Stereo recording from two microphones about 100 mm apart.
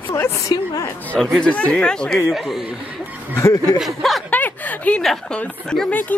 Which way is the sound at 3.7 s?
Centre (ahead or behind).